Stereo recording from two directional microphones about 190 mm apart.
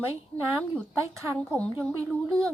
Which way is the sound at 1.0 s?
15° right (ahead or behind).